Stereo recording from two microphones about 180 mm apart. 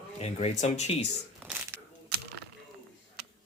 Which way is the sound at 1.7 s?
15° right (ahead or behind).